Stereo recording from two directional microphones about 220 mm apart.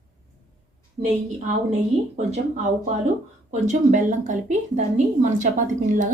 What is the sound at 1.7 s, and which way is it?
Speech, 30° right (ahead or behind).